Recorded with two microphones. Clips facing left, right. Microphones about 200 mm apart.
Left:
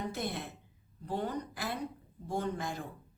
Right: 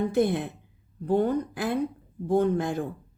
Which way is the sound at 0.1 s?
55° right (ahead or behind).